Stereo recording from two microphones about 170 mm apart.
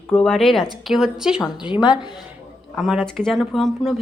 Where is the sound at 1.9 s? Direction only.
25° left (ahead or behind).